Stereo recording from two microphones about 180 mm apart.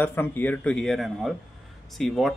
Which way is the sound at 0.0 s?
10° left (ahead or behind).